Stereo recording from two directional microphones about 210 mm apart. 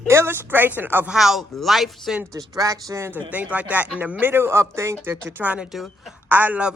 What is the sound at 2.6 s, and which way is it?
Speech, 15° right (ahead or behind).